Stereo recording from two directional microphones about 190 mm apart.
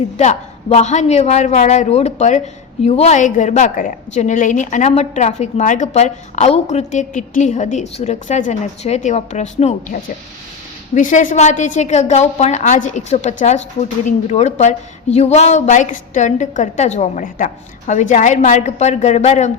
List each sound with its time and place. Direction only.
0.2 s a woman's voice: 35° left (ahead or behind)